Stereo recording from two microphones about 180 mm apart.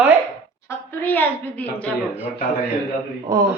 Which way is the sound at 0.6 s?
10° left (ahead or behind).